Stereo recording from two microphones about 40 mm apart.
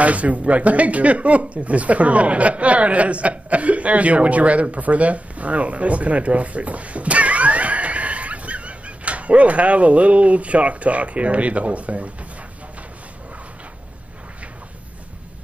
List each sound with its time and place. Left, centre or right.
0.0 s speech: right